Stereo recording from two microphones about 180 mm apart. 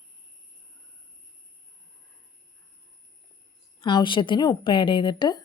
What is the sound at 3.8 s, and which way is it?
A woman's voice, 25° left (ahead or behind).